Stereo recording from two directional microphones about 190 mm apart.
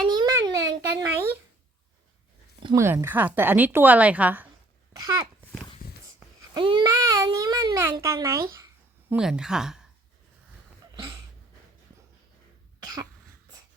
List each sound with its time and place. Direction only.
0.1 s babbling: 20° right (ahead or behind)
2.6 s a child's voice: 15° right (ahead or behind)
5.8 s a sound: 50° left (ahead or behind)
6.5 s a sound: 25° right (ahead or behind)
8.0 s speech: 15° right (ahead or behind)
9.1 s speech: 5° right (ahead or behind)
12.8 s cough: 20° right (ahead or behind)